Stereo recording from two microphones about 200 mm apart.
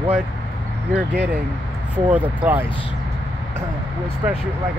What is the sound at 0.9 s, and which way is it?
Speech, 5° right (ahead or behind).